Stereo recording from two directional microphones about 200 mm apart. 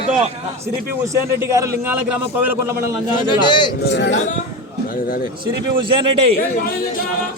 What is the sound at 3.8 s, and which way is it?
Speech, 60° left (ahead or behind).